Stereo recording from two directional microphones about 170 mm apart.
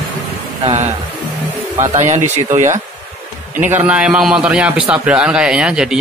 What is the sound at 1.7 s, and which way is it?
Speech, 45° right (ahead or behind).